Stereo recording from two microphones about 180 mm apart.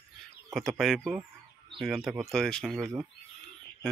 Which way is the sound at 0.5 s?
Centre (ahead or behind).